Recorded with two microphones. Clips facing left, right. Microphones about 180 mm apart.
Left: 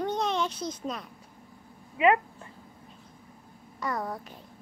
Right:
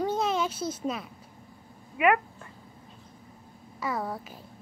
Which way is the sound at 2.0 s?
25° left (ahead or behind).